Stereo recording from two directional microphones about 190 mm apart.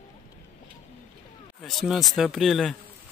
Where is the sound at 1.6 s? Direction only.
Centre (ahead or behind).